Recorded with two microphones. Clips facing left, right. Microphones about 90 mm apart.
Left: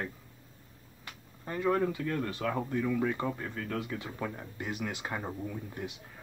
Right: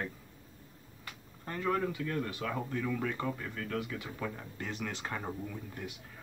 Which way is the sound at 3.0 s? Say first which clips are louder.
Left 3 dB; 20° left (ahead or behind).